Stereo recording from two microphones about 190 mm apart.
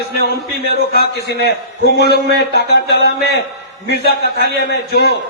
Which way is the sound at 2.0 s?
60° right (ahead or behind).